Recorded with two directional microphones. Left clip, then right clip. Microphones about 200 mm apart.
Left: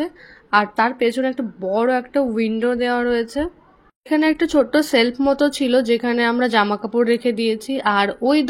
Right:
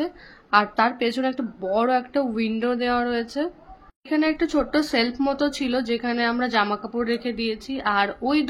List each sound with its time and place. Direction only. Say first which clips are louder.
0.0 s speech: left 2 dB; 15° left (ahead or behind)